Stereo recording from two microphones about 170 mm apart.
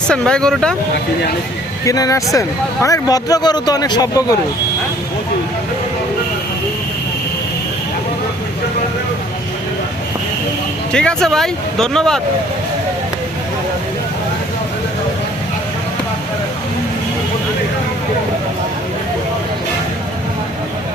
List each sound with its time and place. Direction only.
0.1 s speech: 5° left (ahead or behind)
1.8 s speech: 20° left (ahead or behind)
10.9 s speech: 5° left (ahead or behind)